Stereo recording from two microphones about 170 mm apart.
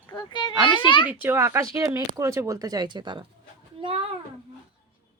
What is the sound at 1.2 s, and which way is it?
Speech, 15° right (ahead or behind).